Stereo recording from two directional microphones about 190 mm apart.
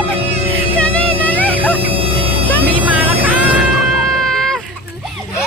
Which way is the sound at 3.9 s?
Centre (ahead or behind).